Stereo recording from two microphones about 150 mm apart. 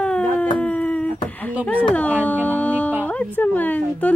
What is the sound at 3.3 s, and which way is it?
Speech, 10° left (ahead or behind).